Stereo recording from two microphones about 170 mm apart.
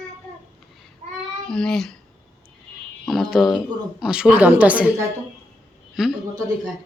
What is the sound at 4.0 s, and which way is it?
Speech, 5° right (ahead or behind).